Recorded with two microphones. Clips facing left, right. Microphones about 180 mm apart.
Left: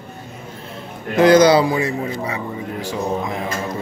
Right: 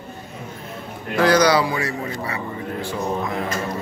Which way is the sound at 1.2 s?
20° left (ahead or behind).